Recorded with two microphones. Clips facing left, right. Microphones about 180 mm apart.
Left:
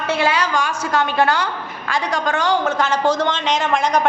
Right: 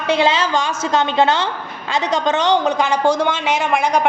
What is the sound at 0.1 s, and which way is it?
A woman's voice, 20° right (ahead or behind).